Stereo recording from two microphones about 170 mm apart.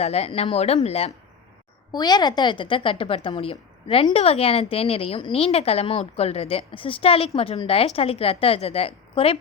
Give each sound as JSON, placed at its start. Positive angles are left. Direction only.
{"t": 0.0, "sound": "a woman's voice", "side_deg": 40}
{"t": 1.9, "sound": "a woman's voice", "side_deg": 25}